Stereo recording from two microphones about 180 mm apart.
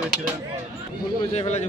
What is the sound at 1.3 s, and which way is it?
Speech, 35° left (ahead or behind).